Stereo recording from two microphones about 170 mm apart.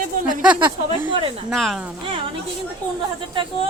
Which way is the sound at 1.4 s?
Centre (ahead or behind).